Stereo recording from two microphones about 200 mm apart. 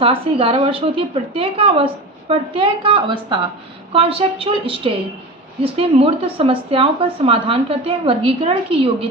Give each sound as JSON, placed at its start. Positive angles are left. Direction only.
{"t": 0.0, "sound": "speech", "side_deg": -30}